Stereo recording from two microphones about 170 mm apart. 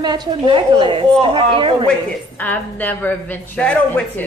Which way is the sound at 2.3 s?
10° left (ahead or behind).